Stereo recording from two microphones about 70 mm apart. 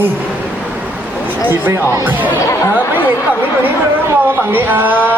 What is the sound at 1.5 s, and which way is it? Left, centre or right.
Speech, right.